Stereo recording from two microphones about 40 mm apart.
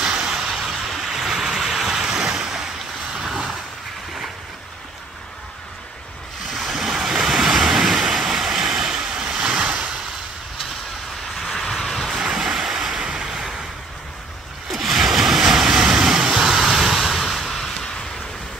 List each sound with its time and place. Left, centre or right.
0.0 s vehicle: right
6.7 s waves: centre
11.3 s vehicle: centre
12.2 s waves: centre
14.7 s a sound: centre
15.8 s vehicle: centre
16.3 s a sound: centre